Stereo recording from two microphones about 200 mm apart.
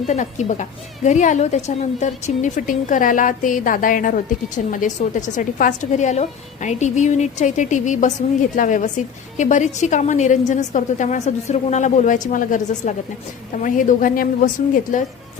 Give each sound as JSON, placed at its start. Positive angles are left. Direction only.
{"t": 0.1, "sound": "speech", "side_deg": 35}